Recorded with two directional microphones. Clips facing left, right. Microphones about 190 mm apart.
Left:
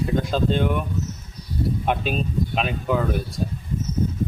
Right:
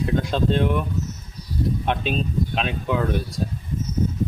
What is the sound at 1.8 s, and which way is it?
Speech, 5° left (ahead or behind).